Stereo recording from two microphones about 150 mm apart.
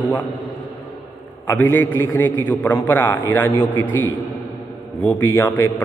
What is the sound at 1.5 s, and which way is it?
A man's voice, 15° left (ahead or behind).